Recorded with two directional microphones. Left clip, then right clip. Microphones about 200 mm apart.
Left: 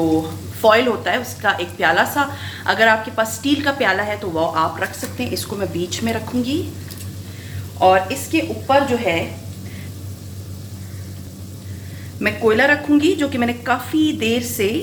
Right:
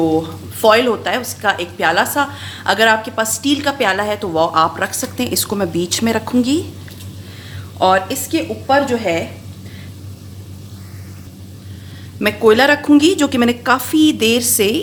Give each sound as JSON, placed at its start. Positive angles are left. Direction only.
{"t": 0.6, "sound": "a woman's voice", "side_deg": -40}
{"t": 7.8, "sound": "a woman's voice", "side_deg": -50}
{"t": 12.2, "sound": "a woman's voice", "side_deg": -50}